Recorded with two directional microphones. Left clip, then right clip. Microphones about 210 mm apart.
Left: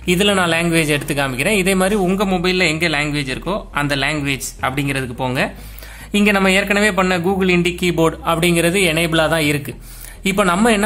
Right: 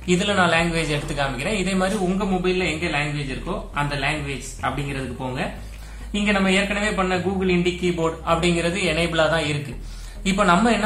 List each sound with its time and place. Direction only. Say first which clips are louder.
0.0 s speech: left 4 dB; 45° left (ahead or behind)